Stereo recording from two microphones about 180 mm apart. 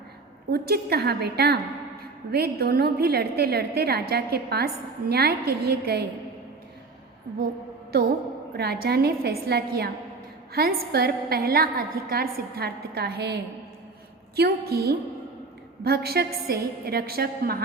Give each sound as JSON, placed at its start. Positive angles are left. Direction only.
{"t": 0.5, "sound": "a woman's voice", "side_deg": -60}
{"t": 8.5, "sound": "a woman's voice", "side_deg": -60}